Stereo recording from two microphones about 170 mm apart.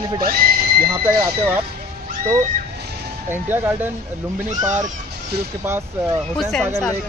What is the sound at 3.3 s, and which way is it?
Speech, 10° right (ahead or behind).